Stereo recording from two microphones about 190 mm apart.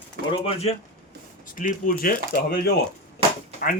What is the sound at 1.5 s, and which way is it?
Speech, 45° left (ahead or behind).